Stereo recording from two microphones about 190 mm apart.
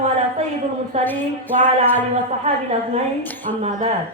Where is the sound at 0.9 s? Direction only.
35° right (ahead or behind).